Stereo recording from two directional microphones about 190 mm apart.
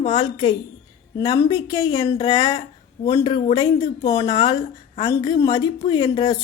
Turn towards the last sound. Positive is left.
turn(degrees=20)  # may be behind; listen again after turning